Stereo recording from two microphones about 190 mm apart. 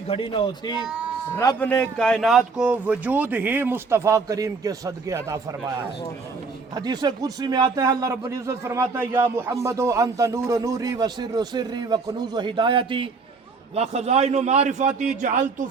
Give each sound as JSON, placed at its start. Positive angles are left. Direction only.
{"t": 0.1, "sound": "a man's voice", "side_deg": 25}
{"t": 0.9, "sound": "speech", "side_deg": -5}
{"t": 1.5, "sound": "speech", "side_deg": 5}
{"t": 6.7, "sound": "a man's voice", "side_deg": -20}